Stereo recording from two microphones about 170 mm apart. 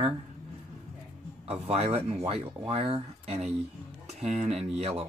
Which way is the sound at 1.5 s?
35° right (ahead or behind).